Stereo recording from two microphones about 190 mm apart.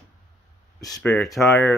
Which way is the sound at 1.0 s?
5° left (ahead or behind).